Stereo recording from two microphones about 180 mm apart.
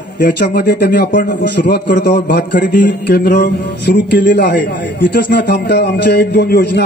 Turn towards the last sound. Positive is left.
turn(degrees=65)  # may be behind; listen again after turning